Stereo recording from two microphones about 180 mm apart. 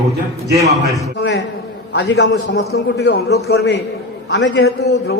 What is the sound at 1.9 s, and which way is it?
A man's voice, 85° left.